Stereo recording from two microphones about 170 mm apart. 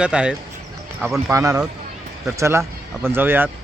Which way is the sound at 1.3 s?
20° right (ahead or behind).